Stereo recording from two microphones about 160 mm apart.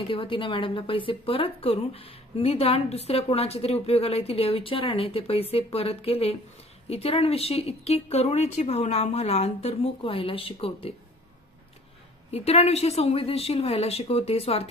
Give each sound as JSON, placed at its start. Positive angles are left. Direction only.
{"t": 0.1, "sound": "a woman's voice", "side_deg": 30}
{"t": 12.3, "sound": "a woman's voice", "side_deg": 40}